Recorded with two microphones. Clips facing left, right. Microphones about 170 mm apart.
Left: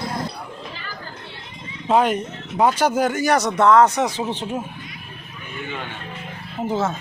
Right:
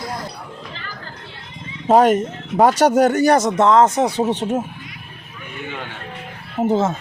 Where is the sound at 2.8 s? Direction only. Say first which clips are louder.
Right 5 dB; 70° right (ahead or behind).